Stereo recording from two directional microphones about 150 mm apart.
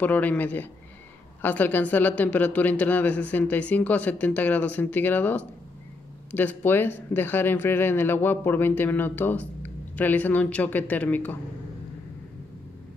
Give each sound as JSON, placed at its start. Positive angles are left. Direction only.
{"t": 0.0, "sound": "speech", "side_deg": 10}